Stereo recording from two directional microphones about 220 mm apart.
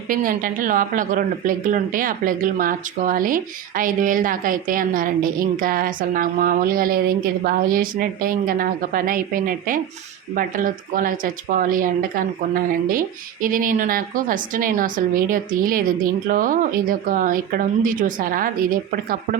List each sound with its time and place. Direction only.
0.1 s speech: 40° right (ahead or behind)